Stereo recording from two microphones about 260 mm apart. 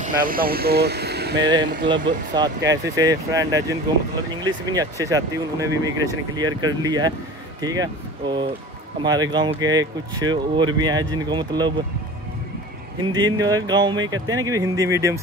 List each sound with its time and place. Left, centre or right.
0.0 s speech: right
1.4 s speech: centre
13.0 s speech: centre